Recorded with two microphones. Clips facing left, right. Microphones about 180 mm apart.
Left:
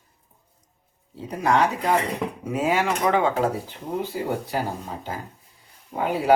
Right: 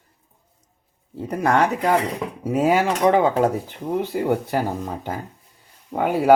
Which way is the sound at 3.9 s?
60° right (ahead or behind).